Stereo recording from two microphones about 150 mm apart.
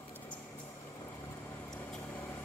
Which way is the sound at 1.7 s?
10° left (ahead or behind).